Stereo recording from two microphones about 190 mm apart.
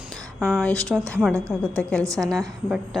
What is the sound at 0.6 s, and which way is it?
A woman's voice, 5° left (ahead or behind).